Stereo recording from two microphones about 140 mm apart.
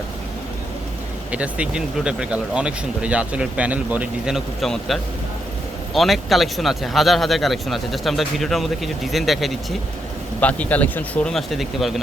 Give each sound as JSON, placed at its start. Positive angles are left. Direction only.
{"t": 1.3, "sound": "speech", "side_deg": -10}
{"t": 10.4, "sound": "speech", "side_deg": 10}